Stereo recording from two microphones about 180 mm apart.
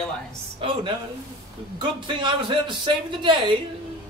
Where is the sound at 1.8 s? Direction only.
25° right (ahead or behind).